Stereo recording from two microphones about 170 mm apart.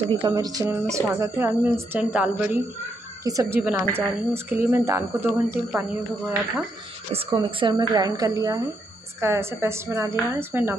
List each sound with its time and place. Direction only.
0.1 s speech: 25° right (ahead or behind)
7.3 s speech: 30° right (ahead or behind); by 10.8 s 15° right (ahead or behind)